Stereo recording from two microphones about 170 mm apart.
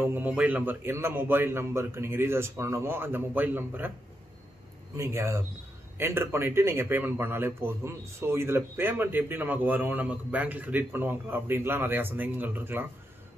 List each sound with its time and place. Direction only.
0.0 s a man's voice: 10° right (ahead or behind)
4.9 s a man's voice: 15° right (ahead or behind)